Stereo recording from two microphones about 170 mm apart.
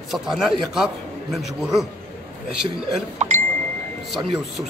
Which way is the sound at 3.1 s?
45° right (ahead or behind).